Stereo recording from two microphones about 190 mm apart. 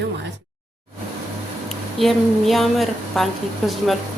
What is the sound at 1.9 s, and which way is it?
A woman's voice, centre (ahead or behind).